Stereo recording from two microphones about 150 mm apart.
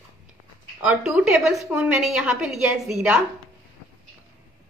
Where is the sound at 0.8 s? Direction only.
5° right (ahead or behind).